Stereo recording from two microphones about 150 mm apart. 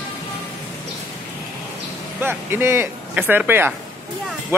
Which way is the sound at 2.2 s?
15° right (ahead or behind).